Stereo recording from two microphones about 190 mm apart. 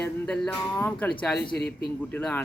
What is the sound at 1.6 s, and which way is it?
Speech, 60° left (ahead or behind).